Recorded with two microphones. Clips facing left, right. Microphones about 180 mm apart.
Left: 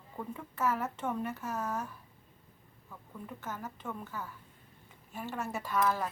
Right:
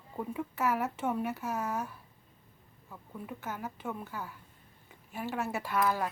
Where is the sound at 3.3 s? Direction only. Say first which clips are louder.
Right 2 dB; 10° right (ahead or behind).